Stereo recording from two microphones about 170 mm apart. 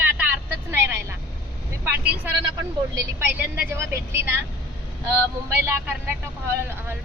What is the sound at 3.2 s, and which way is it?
Speech, 10° right (ahead or behind).